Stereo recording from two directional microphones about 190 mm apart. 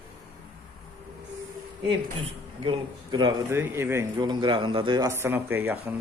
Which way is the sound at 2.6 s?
25° right (ahead or behind).